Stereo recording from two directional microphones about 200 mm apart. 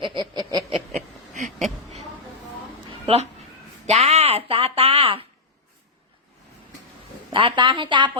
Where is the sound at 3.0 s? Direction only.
30° right (ahead or behind).